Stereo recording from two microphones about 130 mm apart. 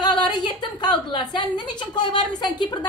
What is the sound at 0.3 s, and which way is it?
A woman's voice, 35° left (ahead or behind).